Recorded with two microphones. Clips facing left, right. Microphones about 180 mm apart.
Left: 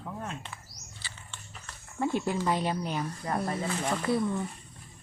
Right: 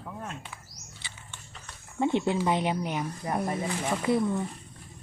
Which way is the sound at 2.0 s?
20° right (ahead or behind).